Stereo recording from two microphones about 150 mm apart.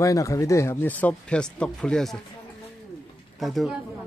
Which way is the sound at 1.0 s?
5° left (ahead or behind).